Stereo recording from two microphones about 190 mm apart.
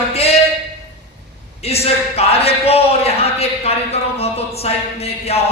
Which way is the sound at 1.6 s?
30° left (ahead or behind).